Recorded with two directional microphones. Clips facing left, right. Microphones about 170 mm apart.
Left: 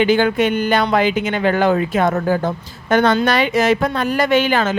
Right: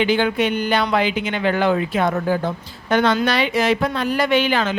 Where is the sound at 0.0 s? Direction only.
45° left (ahead or behind).